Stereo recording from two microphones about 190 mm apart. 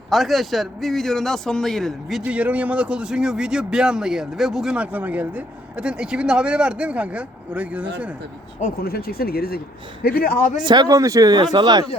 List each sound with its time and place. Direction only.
0.1 s a man's voice: centre (ahead or behind)
8.6 s speech: 55° left (ahead or behind)
10.6 s speech: 25° right (ahead or behind)